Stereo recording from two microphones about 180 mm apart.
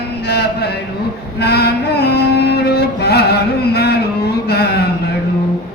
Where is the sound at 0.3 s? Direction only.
65° left (ahead or behind).